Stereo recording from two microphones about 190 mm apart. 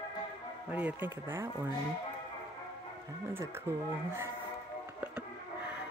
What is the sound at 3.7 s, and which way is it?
Speech, 15° right (ahead or behind).